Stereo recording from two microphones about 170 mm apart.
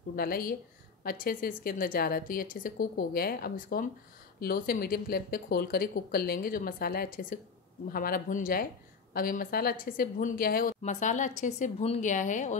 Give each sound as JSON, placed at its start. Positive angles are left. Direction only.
{"t": 0.1, "sound": "speech", "side_deg": 60}
{"t": 10.8, "sound": "speech", "side_deg": 45}